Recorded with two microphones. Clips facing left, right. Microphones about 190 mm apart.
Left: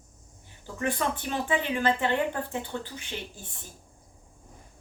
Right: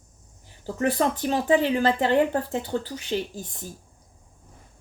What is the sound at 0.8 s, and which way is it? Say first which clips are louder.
Speech: right 6 dB; 40° right (ahead or behind).